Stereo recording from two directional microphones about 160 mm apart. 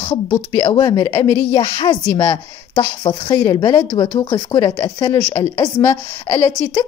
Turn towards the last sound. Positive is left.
turn(degrees=10)  # may be behind; listen again after turning